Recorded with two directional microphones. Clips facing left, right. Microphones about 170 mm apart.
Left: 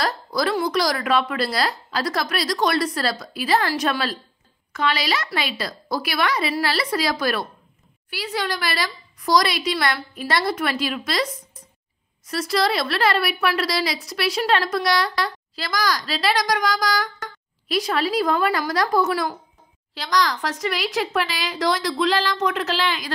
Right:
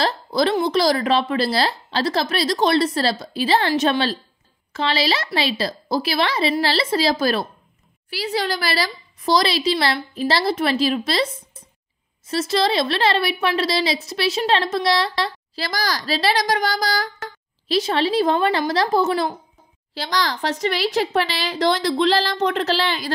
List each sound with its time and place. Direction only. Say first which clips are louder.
0.0 s a woman's voice: right 3 dB; 25° right (ahead or behind)